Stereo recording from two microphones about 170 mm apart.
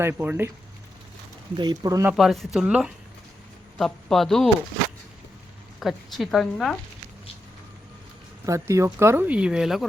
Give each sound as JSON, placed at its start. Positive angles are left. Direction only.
{"t": 0.0, "sound": "speech", "side_deg": -10}
{"t": 1.5, "sound": "speech", "side_deg": -25}
{"t": 2.1, "sound": "a woman's voice", "side_deg": 0}
{"t": 5.8, "sound": "a woman's voice", "side_deg": 0}
{"t": 8.4, "sound": "speech", "side_deg": -15}